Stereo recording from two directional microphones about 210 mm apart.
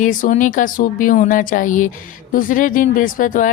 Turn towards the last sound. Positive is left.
turn(degrees=40)  # may be behind; listen again after turning